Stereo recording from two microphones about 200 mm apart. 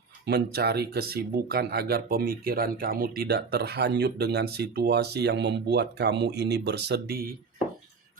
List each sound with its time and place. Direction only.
0.3 s speech: 55° right (ahead or behind)